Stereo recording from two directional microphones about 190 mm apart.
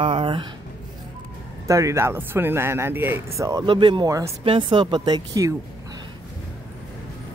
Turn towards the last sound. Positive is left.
turn(degrees=-20)  # may be behind; listen again after turning